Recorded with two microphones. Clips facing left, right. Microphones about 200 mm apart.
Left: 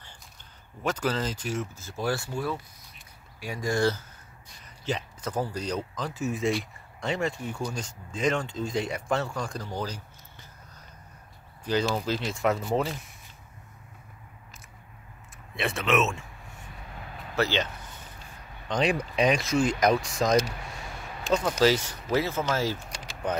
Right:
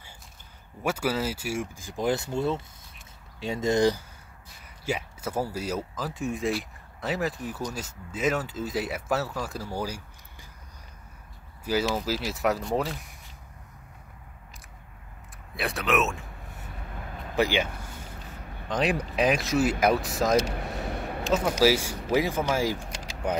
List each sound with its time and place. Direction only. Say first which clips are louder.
0.8 s speech: right 1 dB; 10° right (ahead or behind)
11.6 s speech: even; 5° right (ahead or behind)
15.5 s speech: left 1 dB; centre (ahead or behind)
17.4 s speech: right 2 dB; 10° right (ahead or behind)
18.7 s speech: even; centre (ahead or behind)
20.4 s a sound: right 7 dB; 55° right (ahead or behind)
21.3 s speech: even; 10° right (ahead or behind)